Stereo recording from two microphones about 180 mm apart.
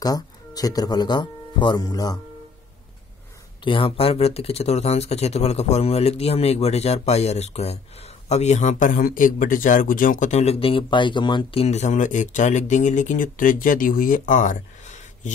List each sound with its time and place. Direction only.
0.0 s speech: 20° left (ahead or behind)
3.6 s speech: 30° left (ahead or behind); by 15.3 s 45° left (ahead or behind)